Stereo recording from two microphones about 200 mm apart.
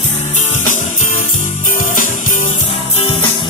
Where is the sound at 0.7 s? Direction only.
40° left (ahead or behind).